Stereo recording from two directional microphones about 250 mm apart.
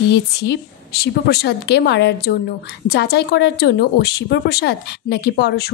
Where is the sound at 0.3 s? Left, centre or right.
Left.